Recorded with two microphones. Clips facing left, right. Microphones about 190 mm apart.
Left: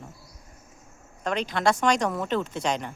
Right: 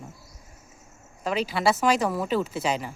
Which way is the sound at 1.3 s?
5° right (ahead or behind).